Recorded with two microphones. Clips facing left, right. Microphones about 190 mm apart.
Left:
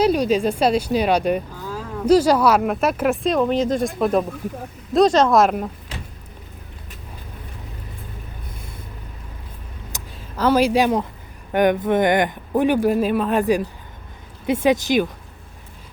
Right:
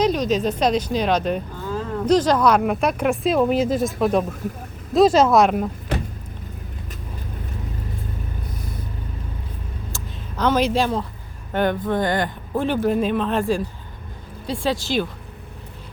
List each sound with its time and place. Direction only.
0.0 s speech: 10° left (ahead or behind)
9.9 s a sound: 10° left (ahead or behind)
11.5 s speech: 15° left (ahead or behind)
14.4 s speech: 20° left (ahead or behind)